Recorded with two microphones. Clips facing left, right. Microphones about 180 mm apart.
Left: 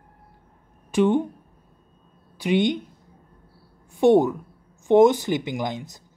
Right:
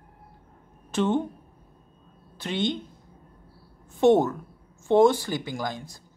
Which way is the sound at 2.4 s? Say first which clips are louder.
Left 7 dB; 15° left (ahead or behind).